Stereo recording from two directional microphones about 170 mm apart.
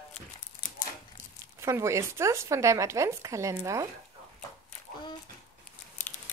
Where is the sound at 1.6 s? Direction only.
15° right (ahead or behind).